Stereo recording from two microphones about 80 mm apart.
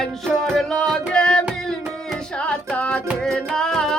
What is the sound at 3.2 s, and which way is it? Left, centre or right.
Music, centre.